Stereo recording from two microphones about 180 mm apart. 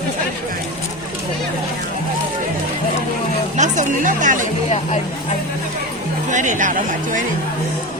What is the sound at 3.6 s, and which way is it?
Speech, 45° right (ahead or behind).